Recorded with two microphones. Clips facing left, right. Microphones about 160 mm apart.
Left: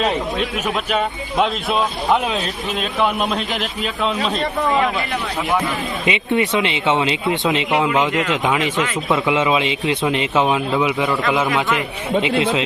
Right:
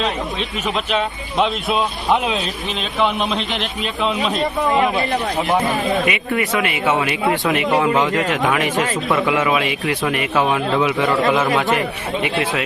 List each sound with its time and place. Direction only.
0.9 s a man's voice: 5° left (ahead or behind)
6.1 s a man's voice: 25° left (ahead or behind)
12.2 s a man's voice: 20° left (ahead or behind)